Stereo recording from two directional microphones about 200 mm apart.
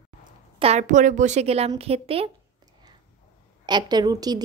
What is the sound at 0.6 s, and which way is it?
A woman's voice, 35° right (ahead or behind).